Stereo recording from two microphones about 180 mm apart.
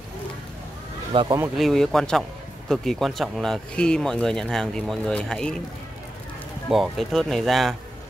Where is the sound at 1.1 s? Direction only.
25° right (ahead or behind).